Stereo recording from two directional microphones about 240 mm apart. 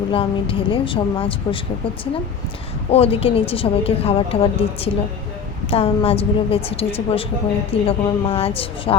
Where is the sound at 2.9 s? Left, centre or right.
Left.